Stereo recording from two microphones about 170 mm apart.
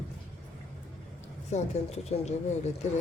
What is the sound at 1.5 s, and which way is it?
Speech, 40° left (ahead or behind).